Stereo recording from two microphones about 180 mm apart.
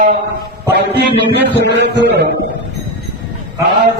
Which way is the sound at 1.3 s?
70° right (ahead or behind).